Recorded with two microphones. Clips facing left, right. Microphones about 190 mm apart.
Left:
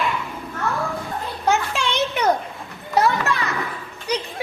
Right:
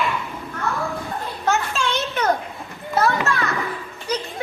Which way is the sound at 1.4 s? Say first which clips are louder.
Left 1 dB; 15° left (ahead or behind).